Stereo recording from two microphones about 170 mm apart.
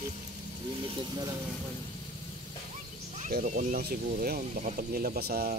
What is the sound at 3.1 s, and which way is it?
Speech, 50° right (ahead or behind).